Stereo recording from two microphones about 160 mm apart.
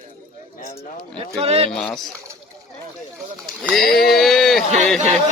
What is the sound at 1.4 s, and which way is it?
Speech, 40° right (ahead or behind).